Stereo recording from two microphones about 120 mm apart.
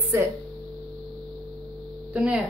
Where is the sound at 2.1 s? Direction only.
10° right (ahead or behind).